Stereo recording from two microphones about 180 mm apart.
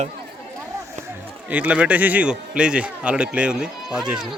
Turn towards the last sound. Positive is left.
turn(degrees=-5)  # may be behind; listen again after turning